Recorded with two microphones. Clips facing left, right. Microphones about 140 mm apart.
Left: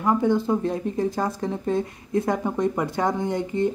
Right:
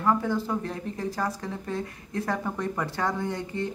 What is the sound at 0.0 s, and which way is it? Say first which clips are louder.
Speech: left 5 dB; 20° left (ahead or behind).